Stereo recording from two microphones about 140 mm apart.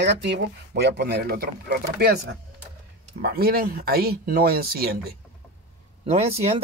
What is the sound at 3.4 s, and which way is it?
Speech, 90° right.